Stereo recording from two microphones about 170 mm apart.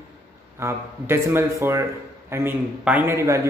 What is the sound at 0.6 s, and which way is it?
Speech, 15° right (ahead or behind).